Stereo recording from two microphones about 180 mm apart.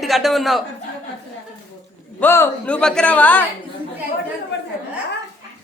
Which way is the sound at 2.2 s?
10° left (ahead or behind).